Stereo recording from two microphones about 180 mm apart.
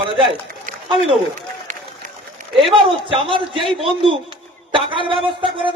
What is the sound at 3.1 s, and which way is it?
Speech, 30° right (ahead or behind).